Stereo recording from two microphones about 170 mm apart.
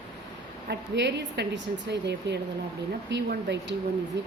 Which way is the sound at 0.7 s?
85° right.